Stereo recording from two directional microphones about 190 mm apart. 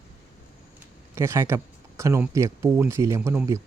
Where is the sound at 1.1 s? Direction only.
15° right (ahead or behind).